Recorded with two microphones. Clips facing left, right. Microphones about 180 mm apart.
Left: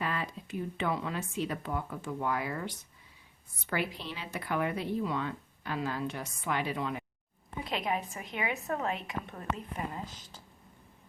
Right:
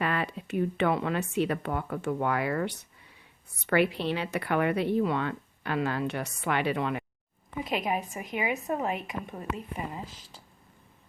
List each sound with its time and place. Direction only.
0.0 s speech: 65° right (ahead or behind)
7.6 s a woman's voice: 15° right (ahead or behind)